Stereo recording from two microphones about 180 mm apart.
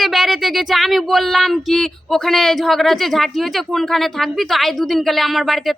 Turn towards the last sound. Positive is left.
turn(degrees=0)  # may be behind; listen again after turning